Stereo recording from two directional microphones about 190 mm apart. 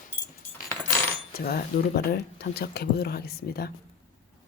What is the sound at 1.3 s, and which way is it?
Speech, 50° left (ahead or behind).